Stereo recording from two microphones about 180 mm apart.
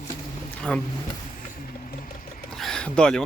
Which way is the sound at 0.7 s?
5° left (ahead or behind).